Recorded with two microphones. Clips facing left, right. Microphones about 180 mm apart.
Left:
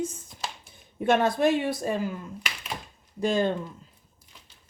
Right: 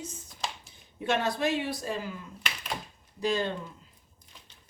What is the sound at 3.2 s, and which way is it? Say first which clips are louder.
Speech: left 4 dB; 50° left (ahead or behind).